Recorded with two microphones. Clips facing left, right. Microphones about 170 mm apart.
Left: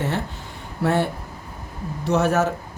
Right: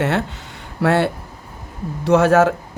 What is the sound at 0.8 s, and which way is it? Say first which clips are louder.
Speech: right 4 dB; 80° right.